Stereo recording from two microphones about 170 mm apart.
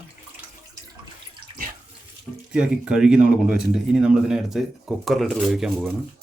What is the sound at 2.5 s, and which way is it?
Speech, 5° right (ahead or behind).